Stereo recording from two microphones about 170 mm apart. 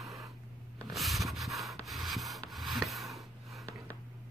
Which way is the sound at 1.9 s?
Centre (ahead or behind).